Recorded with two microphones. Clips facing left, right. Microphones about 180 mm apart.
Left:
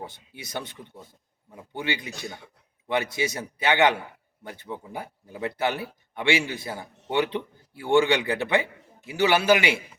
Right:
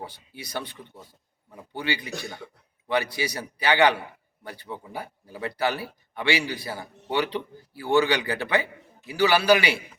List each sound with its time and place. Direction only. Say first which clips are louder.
0.0 s a man's voice: even; 20° left (ahead or behind)